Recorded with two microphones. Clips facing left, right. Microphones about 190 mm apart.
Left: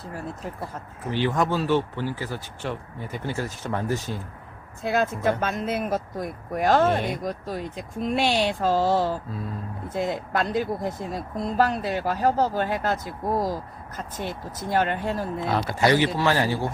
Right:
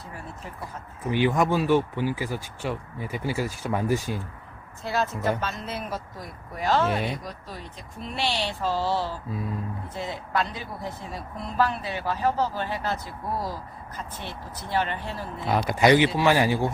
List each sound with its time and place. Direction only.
1.1 s speech: 15° right (ahead or behind)
4.8 s speech: 55° left (ahead or behind)
15.4 s speech: 15° right (ahead or behind)